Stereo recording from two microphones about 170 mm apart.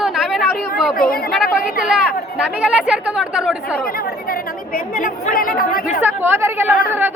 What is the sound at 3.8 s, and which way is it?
Speech, 60° left (ahead or behind).